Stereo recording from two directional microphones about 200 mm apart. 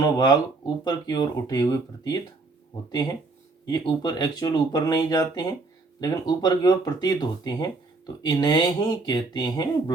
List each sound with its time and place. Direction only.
0.0 s speech: 20° left (ahead or behind)
3.7 s speech: 20° left (ahead or behind)